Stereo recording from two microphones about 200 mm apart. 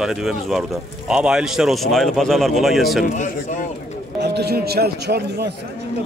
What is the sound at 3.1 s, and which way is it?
Speech, 40° left (ahead or behind).